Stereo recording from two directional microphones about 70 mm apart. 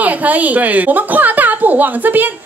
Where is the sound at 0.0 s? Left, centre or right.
Right.